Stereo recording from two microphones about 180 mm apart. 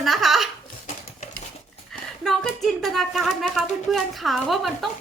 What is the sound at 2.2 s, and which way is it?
A woman's voice, centre (ahead or behind).